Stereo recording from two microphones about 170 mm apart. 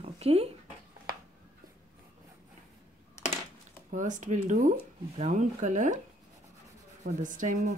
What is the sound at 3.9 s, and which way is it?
Speech, 50° right (ahead or behind).